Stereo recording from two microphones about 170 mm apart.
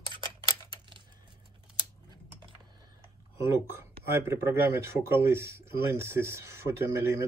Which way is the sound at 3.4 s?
15° right (ahead or behind).